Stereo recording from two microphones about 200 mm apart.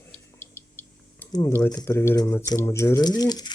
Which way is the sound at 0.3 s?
15° left (ahead or behind).